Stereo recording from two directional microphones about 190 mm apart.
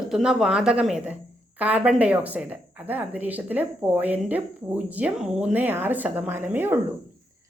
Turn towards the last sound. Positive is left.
turn(degrees=-10)  # may be behind; listen again after turning